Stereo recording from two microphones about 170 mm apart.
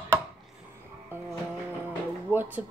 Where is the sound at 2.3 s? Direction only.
10° right (ahead or behind).